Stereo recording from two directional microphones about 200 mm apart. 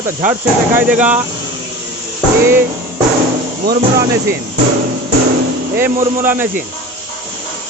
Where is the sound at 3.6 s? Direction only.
50° right (ahead or behind).